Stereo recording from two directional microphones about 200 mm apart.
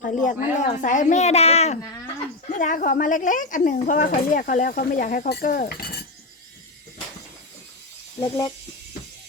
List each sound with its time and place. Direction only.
0.0 s speech: 40° left (ahead or behind)
8.2 s speech: 20° left (ahead or behind)